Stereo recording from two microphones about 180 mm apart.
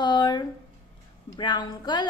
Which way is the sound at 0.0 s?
25° left (ahead or behind).